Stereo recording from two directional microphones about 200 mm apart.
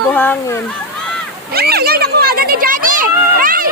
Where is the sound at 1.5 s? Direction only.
50° right (ahead or behind).